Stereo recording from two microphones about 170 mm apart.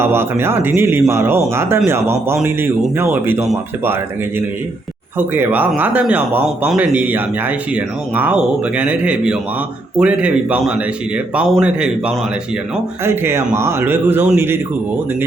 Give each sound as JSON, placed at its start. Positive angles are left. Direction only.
{"t": 0.0, "sound": "speech", "side_deg": -15}
{"t": 5.1, "sound": "a man's voice", "side_deg": -10}